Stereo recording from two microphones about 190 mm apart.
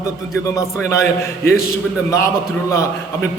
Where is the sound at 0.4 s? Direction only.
15° left (ahead or behind).